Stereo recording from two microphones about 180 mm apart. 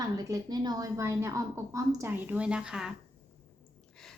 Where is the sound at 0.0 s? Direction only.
20° right (ahead or behind); by 2.9 s 5° right (ahead or behind).